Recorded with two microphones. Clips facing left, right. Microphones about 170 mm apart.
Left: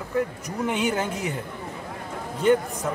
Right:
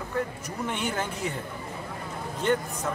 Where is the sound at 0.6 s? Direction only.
15° left (ahead or behind).